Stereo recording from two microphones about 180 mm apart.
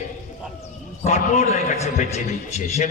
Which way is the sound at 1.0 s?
40° left (ahead or behind).